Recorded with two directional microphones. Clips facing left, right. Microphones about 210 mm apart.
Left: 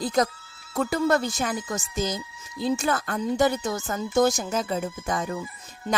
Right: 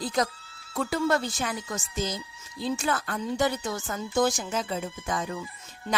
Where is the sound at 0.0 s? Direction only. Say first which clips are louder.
Left 4 dB; 45° left (ahead or behind).